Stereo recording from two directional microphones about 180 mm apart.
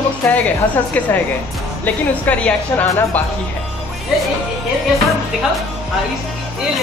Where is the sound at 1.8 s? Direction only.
5° left (ahead or behind).